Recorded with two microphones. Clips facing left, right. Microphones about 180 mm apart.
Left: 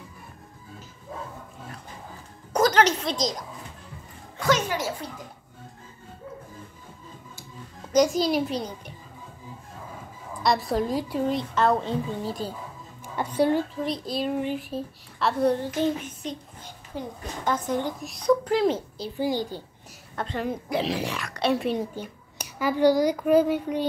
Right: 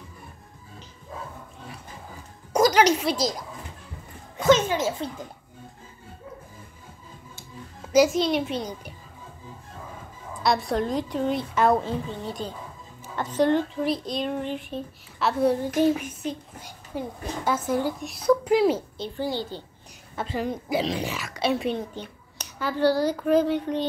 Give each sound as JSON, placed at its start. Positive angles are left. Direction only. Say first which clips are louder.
{"t": 2.5, "sound": "a woman's voice", "louder": "right 2 dB", "side_deg": -10}
{"t": 4.4, "sound": "a child's voice", "louder": "right 5 dB", "side_deg": -20}
{"t": 7.9, "sound": "speech", "louder": "right 1 dB", "side_deg": -5}
{"t": 10.4, "sound": "speech", "louder": "even", "side_deg": 0}
{"t": 11.5, "sound": "speech", "louder": "right 3 dB", "side_deg": -10}
{"t": 12.1, "sound": "a woman's voice", "louder": "left 2 dB", "side_deg": 5}
{"t": 18.9, "sound": "a child's voice", "louder": "left 2 dB", "side_deg": 5}
{"t": 20.2, "sound": "speech", "louder": "right 1 dB", "side_deg": -5}
{"t": 21.7, "sound": "a child's voice", "louder": "left 2 dB", "side_deg": 10}